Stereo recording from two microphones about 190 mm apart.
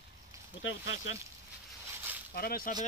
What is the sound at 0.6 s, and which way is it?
Speech, 85° left.